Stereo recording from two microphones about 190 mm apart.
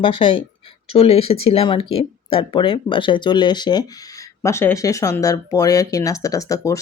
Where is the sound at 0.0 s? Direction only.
25° left (ahead or behind).